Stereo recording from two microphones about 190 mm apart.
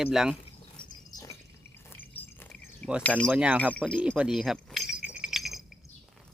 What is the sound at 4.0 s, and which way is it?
Keys jangling, 5° right (ahead or behind).